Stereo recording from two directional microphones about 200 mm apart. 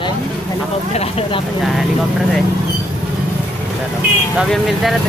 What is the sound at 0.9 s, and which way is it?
Speech, 30° left (ahead or behind).